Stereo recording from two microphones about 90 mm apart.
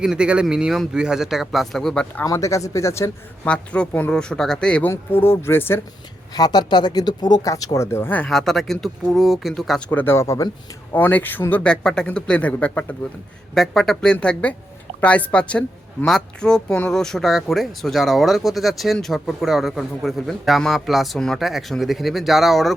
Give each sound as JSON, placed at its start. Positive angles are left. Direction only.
{"t": 0.0, "sound": "a woman's voice", "side_deg": -10}
{"t": 2.2, "sound": "speech", "side_deg": 35}
{"t": 3.4, "sound": "speech", "side_deg": 10}
{"t": 4.9, "sound": "speech", "side_deg": 25}
{"t": 6.3, "sound": "speech", "side_deg": 50}
{"t": 7.5, "sound": "speech", "side_deg": 40}
{"t": 8.3, "sound": "a woman's voice", "side_deg": 5}
{"t": 9.9, "sound": "speech", "side_deg": 25}
{"t": 10.9, "sound": "speech", "side_deg": 20}
{"t": 13.5, "sound": "a woman's voice", "side_deg": 5}